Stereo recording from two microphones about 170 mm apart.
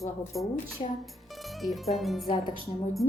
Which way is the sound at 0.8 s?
35° left (ahead or behind).